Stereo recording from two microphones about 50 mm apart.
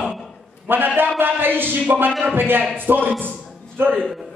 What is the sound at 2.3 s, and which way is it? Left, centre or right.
Speech, right.